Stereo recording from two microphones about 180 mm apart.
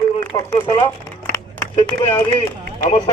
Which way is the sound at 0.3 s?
25° left (ahead or behind).